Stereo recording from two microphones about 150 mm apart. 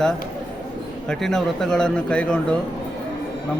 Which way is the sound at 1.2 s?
5° left (ahead or behind).